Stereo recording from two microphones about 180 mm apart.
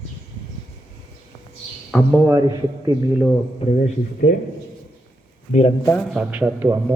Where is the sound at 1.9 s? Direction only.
5° left (ahead or behind).